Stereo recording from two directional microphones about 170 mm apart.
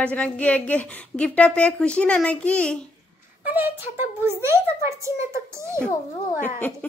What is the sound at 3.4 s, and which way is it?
A woman's voice, 10° right (ahead or behind).